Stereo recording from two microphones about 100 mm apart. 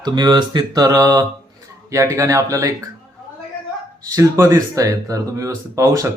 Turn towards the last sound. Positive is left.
turn(degrees=-35)  # may be behind; listen again after turning